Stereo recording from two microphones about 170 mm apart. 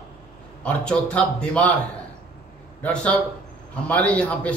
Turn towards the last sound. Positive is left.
turn(degrees=10)  # may be behind; listen again after turning